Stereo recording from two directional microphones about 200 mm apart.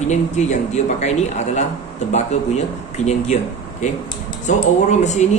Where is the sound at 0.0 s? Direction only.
35° left (ahead or behind).